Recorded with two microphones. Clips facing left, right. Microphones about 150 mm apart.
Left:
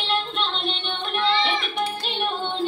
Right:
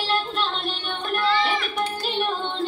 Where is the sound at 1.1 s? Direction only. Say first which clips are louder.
Even; 20° left (ahead or behind).